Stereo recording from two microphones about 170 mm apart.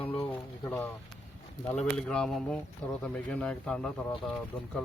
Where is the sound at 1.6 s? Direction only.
5° left (ahead or behind).